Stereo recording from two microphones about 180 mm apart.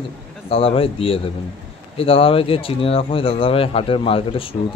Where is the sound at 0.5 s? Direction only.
30° left (ahead or behind).